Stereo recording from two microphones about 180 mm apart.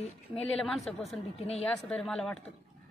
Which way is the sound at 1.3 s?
35° left (ahead or behind).